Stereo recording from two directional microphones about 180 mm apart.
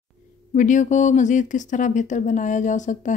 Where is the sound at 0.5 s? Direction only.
45° left (ahead or behind).